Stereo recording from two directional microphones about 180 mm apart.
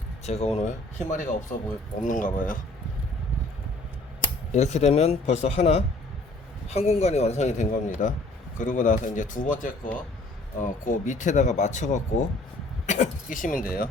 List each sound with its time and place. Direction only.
0.3 s a man's voice: 35° left (ahead or behind)
4.5 s a man's voice: 40° left (ahead or behind)